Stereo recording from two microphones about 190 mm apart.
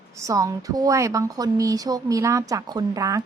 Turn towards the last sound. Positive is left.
turn(degrees=-20)  # may be behind; listen again after turning